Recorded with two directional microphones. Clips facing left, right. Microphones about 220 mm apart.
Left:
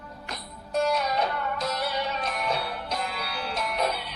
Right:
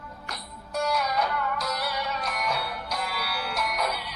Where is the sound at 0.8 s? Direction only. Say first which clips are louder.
Left 2 dB; 25° left (ahead or behind).